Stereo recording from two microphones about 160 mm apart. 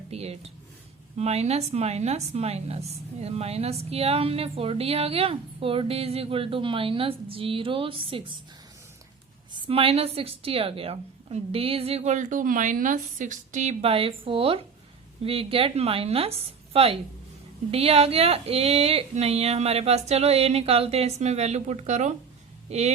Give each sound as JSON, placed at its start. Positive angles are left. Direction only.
{"t": 0.1, "sound": "a woman's voice", "side_deg": -40}
{"t": 9.5, "sound": "a woman's voice", "side_deg": -35}